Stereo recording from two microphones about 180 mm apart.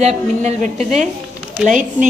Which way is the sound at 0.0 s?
40° right (ahead or behind).